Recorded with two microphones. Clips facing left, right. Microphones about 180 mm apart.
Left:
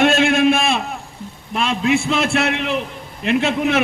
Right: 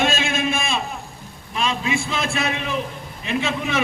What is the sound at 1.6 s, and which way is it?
A man's voice, 60° left (ahead or behind).